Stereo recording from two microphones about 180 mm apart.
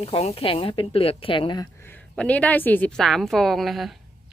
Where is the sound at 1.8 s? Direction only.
10° left (ahead or behind).